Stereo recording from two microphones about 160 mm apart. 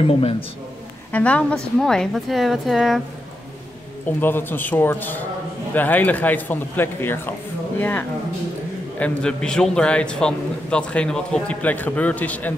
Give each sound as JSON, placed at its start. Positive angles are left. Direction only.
{"t": 0.0, "sound": "speech", "side_deg": 35}
{"t": 1.1, "sound": "a woman's voice", "side_deg": 10}
{"t": 4.2, "sound": "a man's voice", "side_deg": 15}
{"t": 9.0, "sound": "a man's voice", "side_deg": 5}